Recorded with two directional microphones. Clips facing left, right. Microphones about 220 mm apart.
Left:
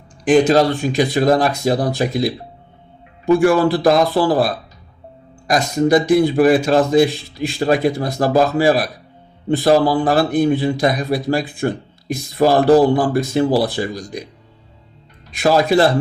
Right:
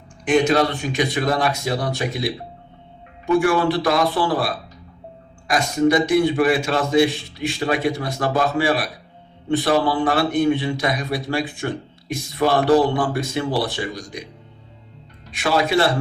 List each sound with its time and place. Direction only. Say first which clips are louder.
0.3 s a man's voice: left 5 dB; 35° left (ahead or behind)
15.4 s a man's voice: left 5 dB; 40° left (ahead or behind)